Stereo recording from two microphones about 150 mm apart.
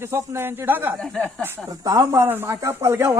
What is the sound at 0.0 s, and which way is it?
Speech, 15° right (ahead or behind).